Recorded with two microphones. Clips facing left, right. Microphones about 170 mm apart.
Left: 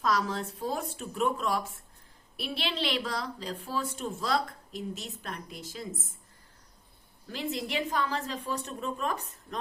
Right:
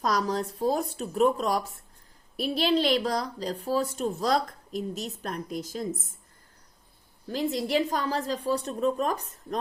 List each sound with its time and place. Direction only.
0.0 s speech: 40° right (ahead or behind)
7.3 s speech: 40° right (ahead or behind)